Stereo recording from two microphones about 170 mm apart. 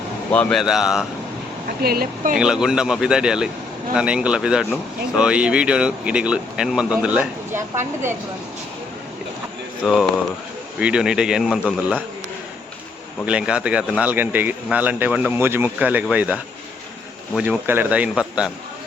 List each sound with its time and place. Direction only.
0.3 s speech: 5° left (ahead or behind)
1.8 s speech: 65° right (ahead or behind)
2.3 s speech: 5° right (ahead or behind)
9.8 s speech: 5° right (ahead or behind)
13.2 s speech: 5° right (ahead or behind)